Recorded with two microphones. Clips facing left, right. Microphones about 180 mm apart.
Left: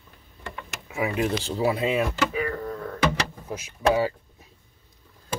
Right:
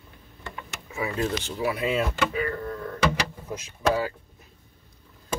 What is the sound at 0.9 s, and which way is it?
Speech, 15° left (ahead or behind).